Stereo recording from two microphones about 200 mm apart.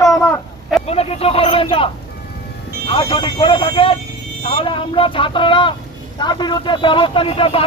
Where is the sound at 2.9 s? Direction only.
25° left (ahead or behind).